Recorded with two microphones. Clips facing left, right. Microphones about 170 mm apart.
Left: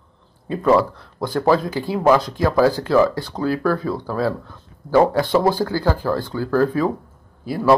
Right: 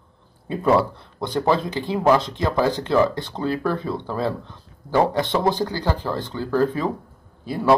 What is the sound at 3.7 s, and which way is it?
Speech, 25° right (ahead or behind).